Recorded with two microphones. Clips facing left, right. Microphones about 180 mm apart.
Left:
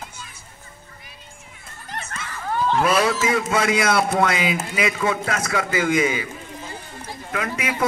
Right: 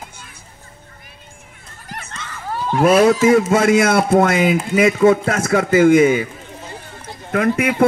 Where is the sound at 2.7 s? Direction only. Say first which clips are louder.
Right 9 dB; 50° right (ahead or behind).